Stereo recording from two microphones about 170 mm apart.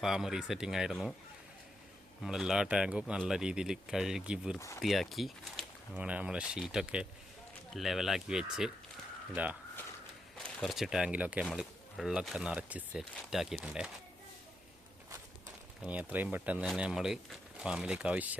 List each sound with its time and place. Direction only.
0.0 s speech: 5° right (ahead or behind)
2.2 s speech: 5° right (ahead or behind)
4.5 s speech: 15° left (ahead or behind)
4.8 s speech: centre (ahead or behind)
10.3 s speech: centre (ahead or behind)
15.8 s speech: 5° right (ahead or behind)